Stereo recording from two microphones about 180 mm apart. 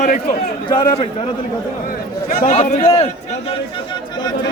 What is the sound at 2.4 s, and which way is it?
Speech, 40° left (ahead or behind).